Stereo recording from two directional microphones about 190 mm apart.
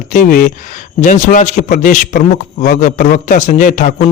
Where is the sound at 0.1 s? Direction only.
45° left (ahead or behind).